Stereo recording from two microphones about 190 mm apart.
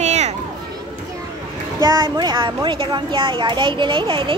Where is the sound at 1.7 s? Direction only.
20° right (ahead or behind).